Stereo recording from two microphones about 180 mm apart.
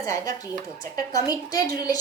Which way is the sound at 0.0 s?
20° left (ahead or behind).